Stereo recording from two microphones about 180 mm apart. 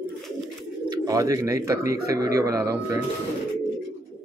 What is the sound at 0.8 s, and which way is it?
Speech, 20° right (ahead or behind).